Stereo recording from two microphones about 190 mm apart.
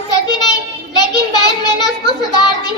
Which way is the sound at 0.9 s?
20° left (ahead or behind).